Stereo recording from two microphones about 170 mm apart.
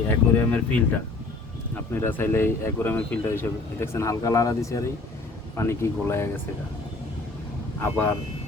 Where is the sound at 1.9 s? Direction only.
15° left (ahead or behind).